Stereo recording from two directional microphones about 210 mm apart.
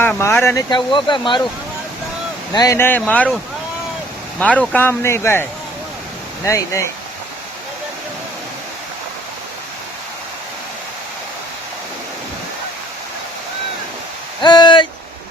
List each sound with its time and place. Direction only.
0.0 s speech: 10° left (ahead or behind)
2.5 s speech: 15° left (ahead or behind)
4.4 s speech: 5° left (ahead or behind)
14.4 s speech: 20° left (ahead or behind)